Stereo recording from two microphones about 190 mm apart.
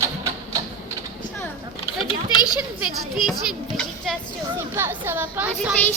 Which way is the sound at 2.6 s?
Centre (ahead or behind).